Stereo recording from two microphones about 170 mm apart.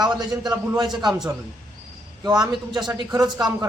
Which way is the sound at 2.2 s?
25° right (ahead or behind).